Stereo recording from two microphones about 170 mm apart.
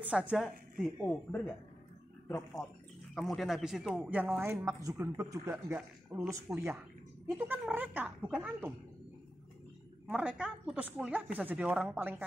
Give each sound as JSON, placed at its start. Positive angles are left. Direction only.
{"t": 0.0, "sound": "speech", "side_deg": -5}
{"t": 3.3, "sound": "speech", "side_deg": 0}
{"t": 10.0, "sound": "speech", "side_deg": -10}